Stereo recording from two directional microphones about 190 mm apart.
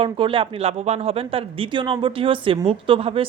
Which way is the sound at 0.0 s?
30° right (ahead or behind).